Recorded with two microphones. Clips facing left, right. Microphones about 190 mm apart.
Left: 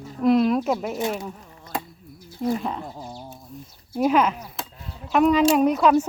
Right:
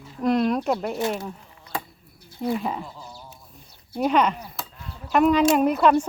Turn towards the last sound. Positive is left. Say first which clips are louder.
# left 1 dB
turn(degrees=0)  # may be behind; listen again after turning